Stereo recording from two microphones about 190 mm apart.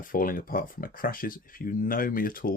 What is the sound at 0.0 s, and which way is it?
Speech, 45° left (ahead or behind).